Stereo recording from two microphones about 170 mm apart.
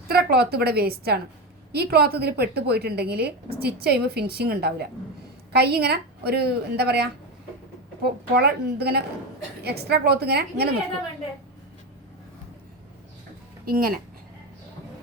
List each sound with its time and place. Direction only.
0.1 s a woman's voice: 65° right (ahead or behind)
13.7 s speech: 60° right (ahead or behind)